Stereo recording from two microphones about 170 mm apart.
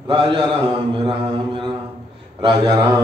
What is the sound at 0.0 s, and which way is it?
Mantra, 30° right (ahead or behind).